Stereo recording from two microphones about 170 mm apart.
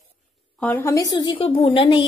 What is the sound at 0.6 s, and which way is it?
A woman's voice, 15° left (ahead or behind).